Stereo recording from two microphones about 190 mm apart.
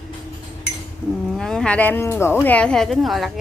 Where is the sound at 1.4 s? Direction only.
5° left (ahead or behind).